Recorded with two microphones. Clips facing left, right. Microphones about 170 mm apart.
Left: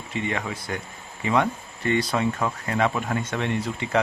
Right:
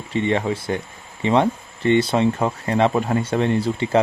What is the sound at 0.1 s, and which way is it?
Speech, 30° right (ahead or behind).